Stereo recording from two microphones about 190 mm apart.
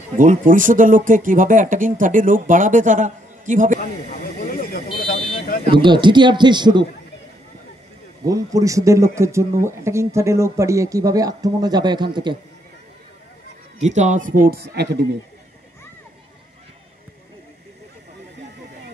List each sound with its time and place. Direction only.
0.2 s speech: 45° right (ahead or behind)
4.6 s a sound: 50° left (ahead or behind)
5.7 s a man's voice: 25° right (ahead or behind)
8.3 s speech: 20° right (ahead or behind)
13.7 s speech: 40° right (ahead or behind); by 15.0 s 60° right (ahead or behind)